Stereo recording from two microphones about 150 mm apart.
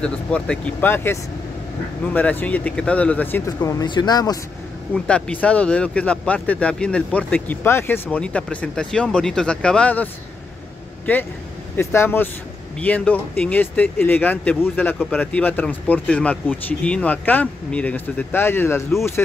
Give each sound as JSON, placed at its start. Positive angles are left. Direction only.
{"t": 0.0, "sound": "speech", "side_deg": 5}
{"t": 4.9, "sound": "speech", "side_deg": 5}
{"t": 11.1, "sound": "speech", "side_deg": 15}